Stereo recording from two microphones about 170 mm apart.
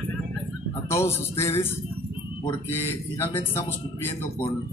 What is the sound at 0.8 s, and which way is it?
Speech, 15° left (ahead or behind).